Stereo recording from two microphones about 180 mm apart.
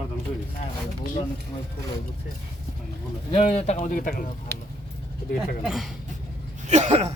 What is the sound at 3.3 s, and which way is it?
Speech, 30° left (ahead or behind).